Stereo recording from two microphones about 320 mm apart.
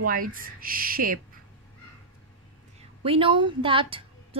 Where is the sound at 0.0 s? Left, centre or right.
Right.